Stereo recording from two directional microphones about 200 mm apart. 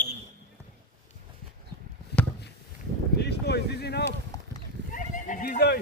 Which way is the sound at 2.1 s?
55° left (ahead or behind).